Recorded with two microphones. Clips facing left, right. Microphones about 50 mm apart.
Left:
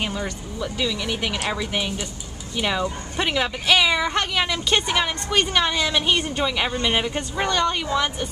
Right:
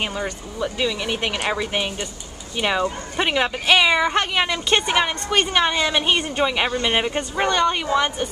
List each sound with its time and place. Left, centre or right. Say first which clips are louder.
0.0 s speech: right 1 dB; centre